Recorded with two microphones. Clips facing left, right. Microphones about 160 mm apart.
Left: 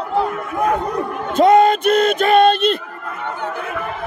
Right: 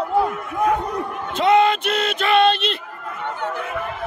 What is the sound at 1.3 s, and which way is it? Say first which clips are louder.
Speech: left 5 dB; 45° left (ahead or behind).